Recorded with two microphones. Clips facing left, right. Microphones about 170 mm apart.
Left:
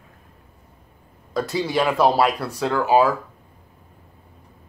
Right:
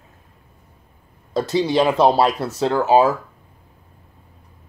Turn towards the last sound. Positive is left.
turn(degrees=-25)  # may be behind; listen again after turning